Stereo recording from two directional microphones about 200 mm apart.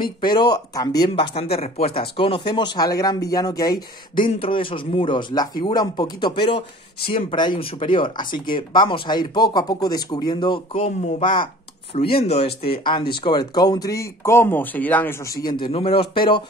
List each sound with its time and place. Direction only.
0.0 s speech: 20° left (ahead or behind)
1.2 s speech: 30° left (ahead or behind)